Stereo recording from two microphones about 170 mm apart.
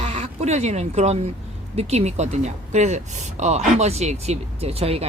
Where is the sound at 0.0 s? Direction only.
40° right (ahead or behind).